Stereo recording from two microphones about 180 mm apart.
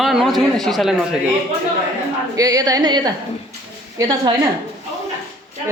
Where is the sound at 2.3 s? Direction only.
20° right (ahead or behind).